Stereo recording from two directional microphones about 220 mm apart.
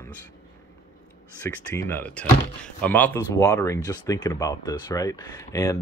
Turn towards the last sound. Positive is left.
turn(degrees=15)  # may be behind; listen again after turning